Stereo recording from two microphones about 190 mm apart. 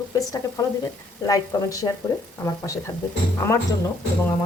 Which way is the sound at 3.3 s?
15° left (ahead or behind).